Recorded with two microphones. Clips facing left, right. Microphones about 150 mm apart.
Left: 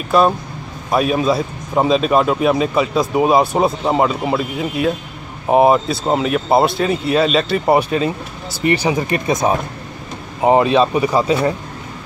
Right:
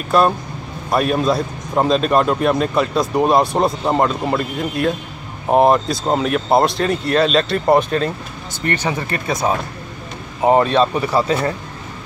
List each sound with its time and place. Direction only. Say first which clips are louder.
0.1 s a man's voice: left 1 dB; centre (ahead or behind)